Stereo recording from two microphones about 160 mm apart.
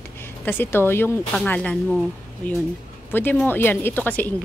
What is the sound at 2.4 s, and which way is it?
Speech, 55° left (ahead or behind).